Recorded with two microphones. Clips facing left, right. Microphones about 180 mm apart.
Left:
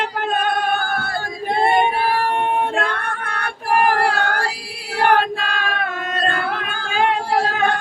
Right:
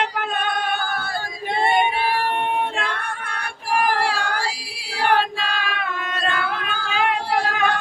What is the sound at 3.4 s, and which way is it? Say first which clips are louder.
Music: left 4 dB; 55° left (ahead or behind).